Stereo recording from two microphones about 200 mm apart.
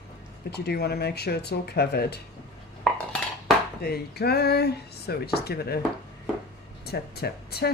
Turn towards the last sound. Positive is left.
turn(degrees=50)  # may be behind; listen again after turning